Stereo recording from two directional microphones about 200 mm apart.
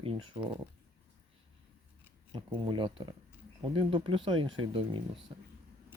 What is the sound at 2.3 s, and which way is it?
Speech, 25° right (ahead or behind).